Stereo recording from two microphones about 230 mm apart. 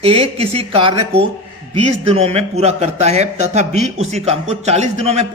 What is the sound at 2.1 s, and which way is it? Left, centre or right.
A man's voice, right.